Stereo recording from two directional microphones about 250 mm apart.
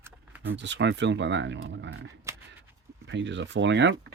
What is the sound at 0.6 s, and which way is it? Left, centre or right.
Speech, right.